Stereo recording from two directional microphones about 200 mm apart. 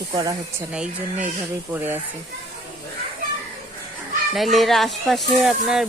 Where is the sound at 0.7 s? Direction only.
5° right (ahead or behind).